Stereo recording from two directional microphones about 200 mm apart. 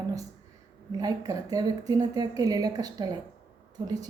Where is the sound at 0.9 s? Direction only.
20° right (ahead or behind).